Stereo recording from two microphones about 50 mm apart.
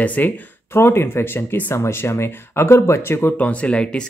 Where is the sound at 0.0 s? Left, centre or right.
Left.